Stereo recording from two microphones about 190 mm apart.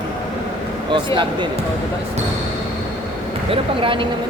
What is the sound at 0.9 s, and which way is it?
Speech, 25° right (ahead or behind).